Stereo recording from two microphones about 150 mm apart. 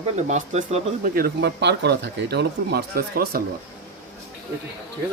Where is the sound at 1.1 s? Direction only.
85° right.